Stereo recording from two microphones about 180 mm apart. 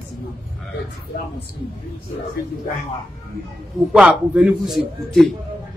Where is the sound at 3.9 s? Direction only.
5° right (ahead or behind).